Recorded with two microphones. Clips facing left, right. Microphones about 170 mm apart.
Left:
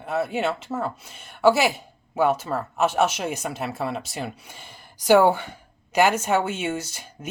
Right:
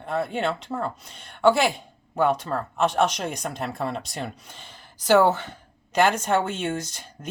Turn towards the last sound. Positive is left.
turn(degrees=10)  # may be behind; listen again after turning